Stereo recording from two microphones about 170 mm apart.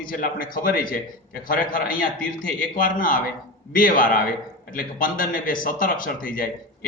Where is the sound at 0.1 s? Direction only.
55° left (ahead or behind).